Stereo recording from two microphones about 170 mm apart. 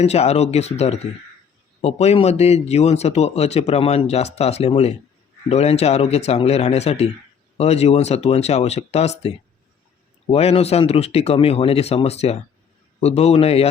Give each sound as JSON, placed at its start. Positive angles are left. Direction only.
{"t": 0.0, "sound": "speech", "side_deg": 40}
{"t": 10.3, "sound": "speech", "side_deg": 35}